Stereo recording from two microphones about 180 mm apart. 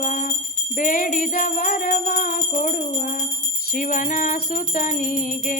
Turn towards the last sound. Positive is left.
turn(degrees=45)  # may be behind; listen again after turning